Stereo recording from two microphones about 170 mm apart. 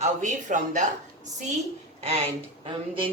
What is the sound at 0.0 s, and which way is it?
Speech, 45° right (ahead or behind).